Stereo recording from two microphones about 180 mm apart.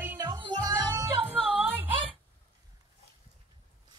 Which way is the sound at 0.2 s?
25° right (ahead or behind).